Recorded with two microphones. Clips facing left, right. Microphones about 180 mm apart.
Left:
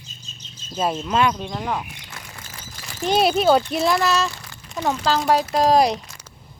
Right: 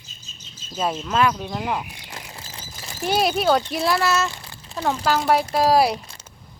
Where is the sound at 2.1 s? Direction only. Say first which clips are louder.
Right 2 dB; 30° right (ahead or behind).